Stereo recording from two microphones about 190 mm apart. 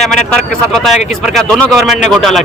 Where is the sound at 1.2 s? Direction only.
Centre (ahead or behind).